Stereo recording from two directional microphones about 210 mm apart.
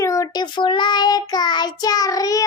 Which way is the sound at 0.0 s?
15° left (ahead or behind).